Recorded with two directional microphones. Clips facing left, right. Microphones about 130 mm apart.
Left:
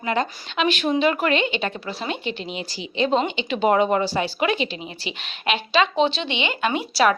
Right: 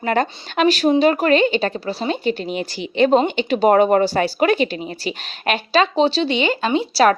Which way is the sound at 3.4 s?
40° right (ahead or behind).